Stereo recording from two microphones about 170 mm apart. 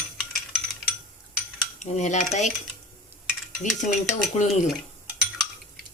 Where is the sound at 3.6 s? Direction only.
45° left (ahead or behind).